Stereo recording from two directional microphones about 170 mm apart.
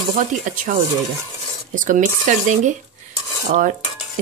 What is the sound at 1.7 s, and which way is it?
Speech, 50° right (ahead or behind).